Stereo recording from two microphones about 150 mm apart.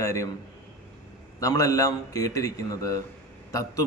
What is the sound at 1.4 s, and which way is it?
A man's voice, 20° left (ahead or behind).